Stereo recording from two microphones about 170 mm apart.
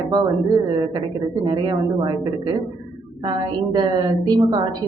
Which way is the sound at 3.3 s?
25° right (ahead or behind).